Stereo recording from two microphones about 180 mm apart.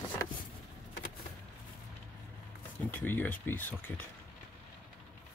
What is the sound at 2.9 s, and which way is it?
Speech, 10° left (ahead or behind).